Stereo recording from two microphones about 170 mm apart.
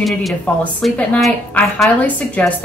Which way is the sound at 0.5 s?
10° left (ahead or behind).